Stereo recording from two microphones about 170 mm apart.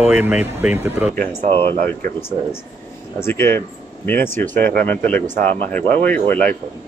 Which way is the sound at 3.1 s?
15° left (ahead or behind).